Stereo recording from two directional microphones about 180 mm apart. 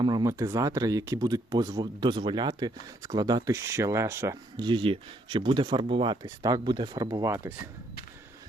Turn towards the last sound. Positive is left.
turn(degrees=-15)  # may be behind; listen again after turning